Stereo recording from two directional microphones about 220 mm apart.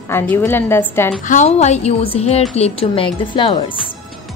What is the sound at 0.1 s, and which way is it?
A woman's voice, 10° left (ahead or behind).